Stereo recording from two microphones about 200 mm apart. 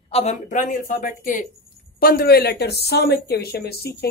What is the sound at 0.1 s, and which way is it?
Speech, 35° left (ahead or behind).